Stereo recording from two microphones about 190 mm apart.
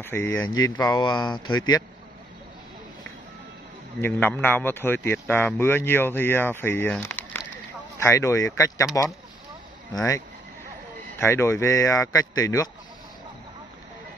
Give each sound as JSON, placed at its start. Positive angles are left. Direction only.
{"t": 0.0, "sound": "speech", "side_deg": 10}
{"t": 1.4, "sound": "speech", "side_deg": 90}
{"t": 4.0, "sound": "speech", "side_deg": 10}
{"t": 9.9, "sound": "speech", "side_deg": 15}